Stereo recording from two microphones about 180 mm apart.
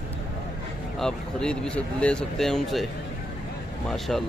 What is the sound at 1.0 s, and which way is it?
A man's voice, 5° left (ahead or behind).